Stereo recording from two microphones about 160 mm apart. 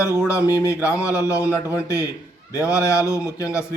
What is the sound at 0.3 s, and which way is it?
Speech, 20° left (ahead or behind).